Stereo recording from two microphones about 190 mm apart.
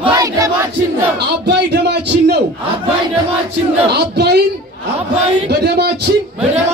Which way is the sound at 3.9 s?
60° right (ahead or behind).